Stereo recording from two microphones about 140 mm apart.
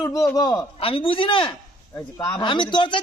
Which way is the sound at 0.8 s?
40° left (ahead or behind).